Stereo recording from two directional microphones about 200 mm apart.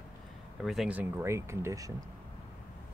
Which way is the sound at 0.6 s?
Centre (ahead or behind).